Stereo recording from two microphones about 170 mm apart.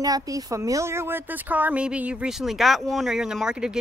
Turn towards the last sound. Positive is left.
turn(degrees=-5)  # may be behind; listen again after turning